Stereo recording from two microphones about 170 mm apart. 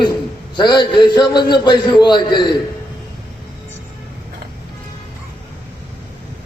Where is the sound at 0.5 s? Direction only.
25° left (ahead or behind).